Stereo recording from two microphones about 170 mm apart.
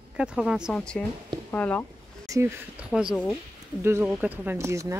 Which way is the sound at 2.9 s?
5° right (ahead or behind).